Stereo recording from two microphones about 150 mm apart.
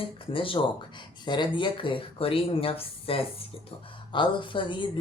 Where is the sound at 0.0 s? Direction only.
35° left (ahead or behind).